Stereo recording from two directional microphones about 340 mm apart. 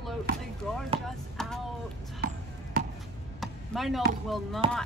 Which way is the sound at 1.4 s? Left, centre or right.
Centre.